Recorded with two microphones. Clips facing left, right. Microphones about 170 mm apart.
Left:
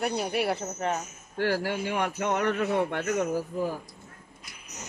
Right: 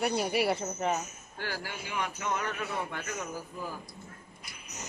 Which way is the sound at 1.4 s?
65° left (ahead or behind).